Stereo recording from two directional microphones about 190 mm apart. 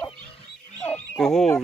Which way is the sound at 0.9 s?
5° left (ahead or behind).